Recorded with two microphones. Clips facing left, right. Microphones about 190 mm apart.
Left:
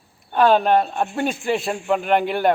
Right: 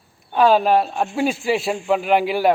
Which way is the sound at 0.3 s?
Centre (ahead or behind).